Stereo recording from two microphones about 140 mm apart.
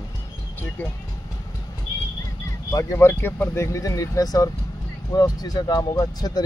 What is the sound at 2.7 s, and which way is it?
Speech, 20° left (ahead or behind).